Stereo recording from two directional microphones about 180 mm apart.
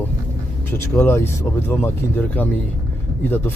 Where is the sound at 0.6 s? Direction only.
10° left (ahead or behind).